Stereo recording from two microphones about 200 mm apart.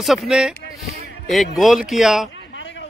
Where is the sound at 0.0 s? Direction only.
Centre (ahead or behind).